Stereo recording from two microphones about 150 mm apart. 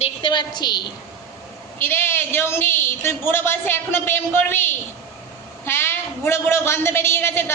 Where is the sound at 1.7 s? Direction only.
15° left (ahead or behind).